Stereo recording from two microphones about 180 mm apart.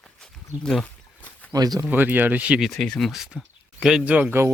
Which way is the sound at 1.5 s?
20° right (ahead or behind).